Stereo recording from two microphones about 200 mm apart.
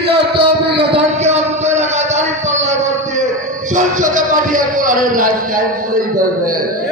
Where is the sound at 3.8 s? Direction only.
40° right (ahead or behind).